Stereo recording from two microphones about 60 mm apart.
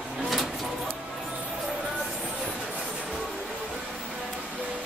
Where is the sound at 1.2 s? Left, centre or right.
Centre.